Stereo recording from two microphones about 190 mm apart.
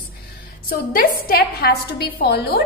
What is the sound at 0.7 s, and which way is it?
A woman's voice, 50° left (ahead or behind).